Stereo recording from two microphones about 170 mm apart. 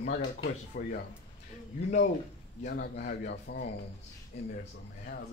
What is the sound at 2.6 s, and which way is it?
Speech, 75° left (ahead or behind).